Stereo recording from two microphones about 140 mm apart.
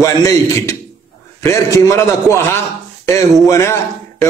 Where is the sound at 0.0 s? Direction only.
20° left (ahead or behind).